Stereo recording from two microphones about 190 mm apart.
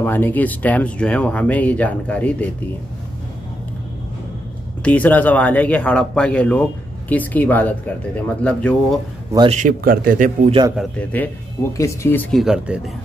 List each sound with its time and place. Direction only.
0.0 s speech: 10° left (ahead or behind)
4.8 s speech: 5° left (ahead or behind)
9.5 s speech: 45° right (ahead or behind)
10.8 s speech: 5° left (ahead or behind)